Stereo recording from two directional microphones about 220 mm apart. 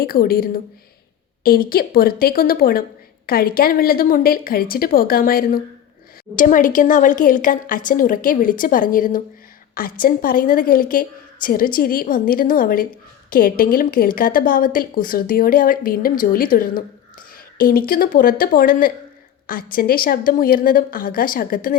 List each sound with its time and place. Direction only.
0.0 s a woman's voice: 45° left (ahead or behind)